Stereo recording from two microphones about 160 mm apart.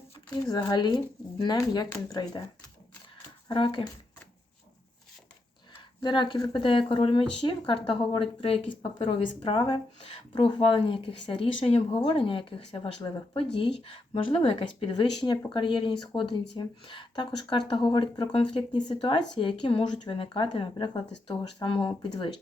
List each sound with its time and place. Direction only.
0.5 s speech: 25° left (ahead or behind)
3.5 s speech: 30° left (ahead or behind)
6.0 s speech: 30° left (ahead or behind)